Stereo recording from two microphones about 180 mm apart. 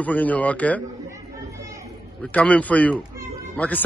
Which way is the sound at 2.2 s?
10° left (ahead or behind).